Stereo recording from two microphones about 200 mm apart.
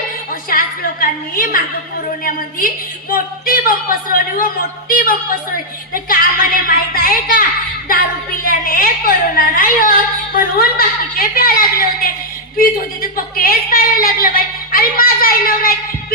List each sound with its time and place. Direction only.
0.5 s a sound: 45° left (ahead or behind)
2.2 s a woman's voice: 45° left (ahead or behind)
8.4 s a woman's voice: 45° left (ahead or behind)